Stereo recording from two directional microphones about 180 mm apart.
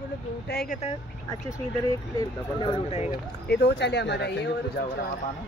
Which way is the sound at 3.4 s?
65° left (ahead or behind).